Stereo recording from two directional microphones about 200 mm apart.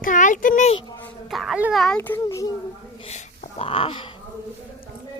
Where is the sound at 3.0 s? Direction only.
35° left (ahead or behind).